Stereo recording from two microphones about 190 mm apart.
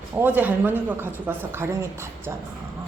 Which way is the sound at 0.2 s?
10° right (ahead or behind).